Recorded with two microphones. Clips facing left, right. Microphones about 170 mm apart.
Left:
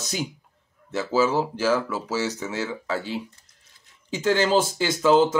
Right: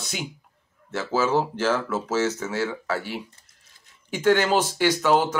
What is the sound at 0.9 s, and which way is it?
Speech, 15° left (ahead or behind).